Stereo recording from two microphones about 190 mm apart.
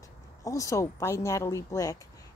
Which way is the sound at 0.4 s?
15° left (ahead or behind).